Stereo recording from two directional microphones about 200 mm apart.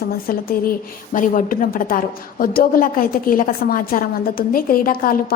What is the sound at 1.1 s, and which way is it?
A woman's voice, 45° left (ahead or behind).